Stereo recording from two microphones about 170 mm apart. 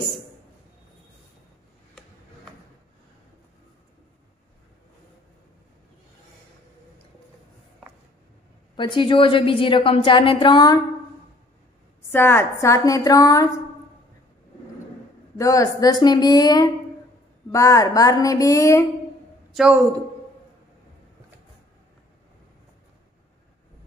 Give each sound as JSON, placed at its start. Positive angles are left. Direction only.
{"t": 8.7, "sound": "a woman's voice", "side_deg": 30}
{"t": 12.1, "sound": "a woman's voice", "side_deg": 15}
{"t": 15.3, "sound": "a woman's voice", "side_deg": 20}
{"t": 19.5, "sound": "a man's voice", "side_deg": -5}